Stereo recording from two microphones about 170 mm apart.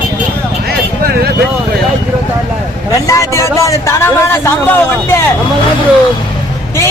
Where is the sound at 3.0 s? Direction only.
20° left (ahead or behind).